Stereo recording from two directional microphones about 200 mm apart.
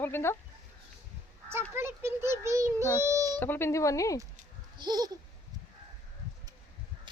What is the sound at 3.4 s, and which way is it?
Speech, 10° left (ahead or behind).